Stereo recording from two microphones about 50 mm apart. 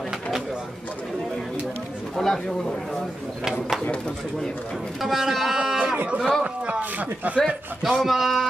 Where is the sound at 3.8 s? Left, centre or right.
Left.